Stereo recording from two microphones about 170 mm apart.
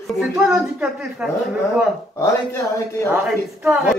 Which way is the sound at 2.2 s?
15° left (ahead or behind).